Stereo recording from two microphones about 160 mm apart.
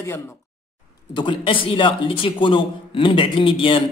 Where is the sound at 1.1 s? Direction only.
30° left (ahead or behind).